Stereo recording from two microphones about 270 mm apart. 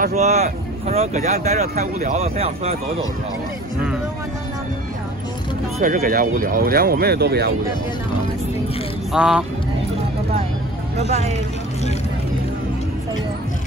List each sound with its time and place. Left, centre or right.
0.0 s speech: right
5.8 s speech: right
9.1 s speech: centre
11.1 s speech: right